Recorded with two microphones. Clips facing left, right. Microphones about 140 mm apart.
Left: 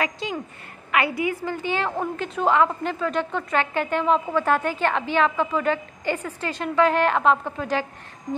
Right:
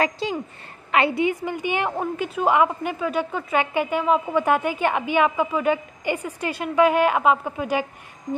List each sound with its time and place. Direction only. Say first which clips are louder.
0.0 s a woman's voice: right 4 dB; 35° right (ahead or behind); by 7.8 s 10° right (ahead or behind)